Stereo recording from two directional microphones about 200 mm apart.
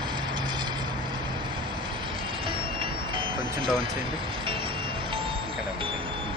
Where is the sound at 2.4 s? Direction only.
25° right (ahead or behind).